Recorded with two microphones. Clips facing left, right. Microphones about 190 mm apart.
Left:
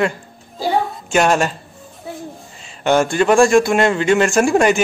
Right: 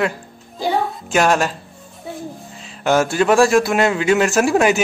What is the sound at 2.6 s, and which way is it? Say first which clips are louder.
A man's voice: left 1 dB; centre (ahead or behind).